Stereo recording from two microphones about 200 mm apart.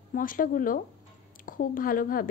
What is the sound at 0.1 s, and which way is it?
A woman's voice, 45° left (ahead or behind).